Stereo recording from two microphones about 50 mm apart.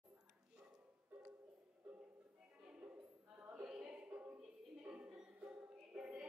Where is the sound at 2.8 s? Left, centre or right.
Right.